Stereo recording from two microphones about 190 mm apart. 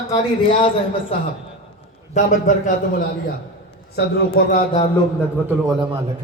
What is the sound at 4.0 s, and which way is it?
Speech, 50° left (ahead or behind).